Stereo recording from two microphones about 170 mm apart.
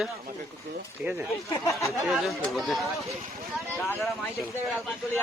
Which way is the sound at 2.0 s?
Centre (ahead or behind).